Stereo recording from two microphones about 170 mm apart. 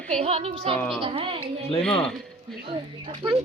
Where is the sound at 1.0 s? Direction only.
30° right (ahead or behind).